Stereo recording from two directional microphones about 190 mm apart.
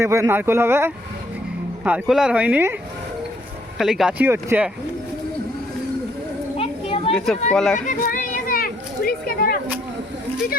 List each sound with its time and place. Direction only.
0.0 s speech: 15° right (ahead or behind)
3.8 s speech: centre (ahead or behind)
6.6 s children playing: 30° left (ahead or behind)
7.5 s speech: 5° left (ahead or behind)
7.9 s a sound: 45° left (ahead or behind)